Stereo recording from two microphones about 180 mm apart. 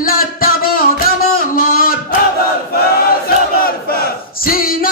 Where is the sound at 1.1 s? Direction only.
55° left (ahead or behind).